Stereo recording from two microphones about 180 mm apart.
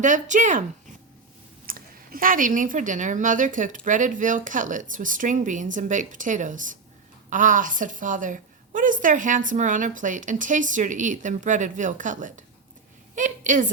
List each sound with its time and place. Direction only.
0.0 s a woman's voice: 45° right (ahead or behind)
1.6 s a woman's voice: 55° right (ahead or behind)